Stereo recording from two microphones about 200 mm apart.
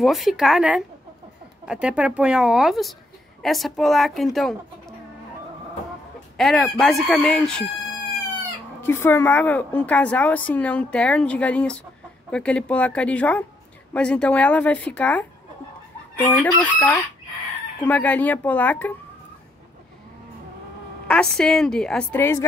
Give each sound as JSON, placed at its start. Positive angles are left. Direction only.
{"t": 0.0, "sound": "a woman's voice", "side_deg": 0}
{"t": 6.3, "sound": "a woman's voice", "side_deg": 0}
{"t": 8.8, "sound": "a woman's voice", "side_deg": 10}
{"t": 16.3, "sound": "a woman's voice", "side_deg": 10}
{"t": 21.1, "sound": "a woman's voice", "side_deg": 5}